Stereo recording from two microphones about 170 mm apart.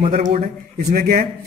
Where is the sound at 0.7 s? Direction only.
55° right (ahead or behind).